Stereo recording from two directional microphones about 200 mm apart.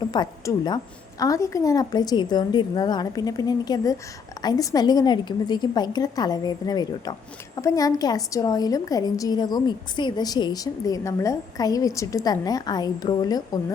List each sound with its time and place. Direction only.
0.1 s a woman's voice: 20° left (ahead or behind)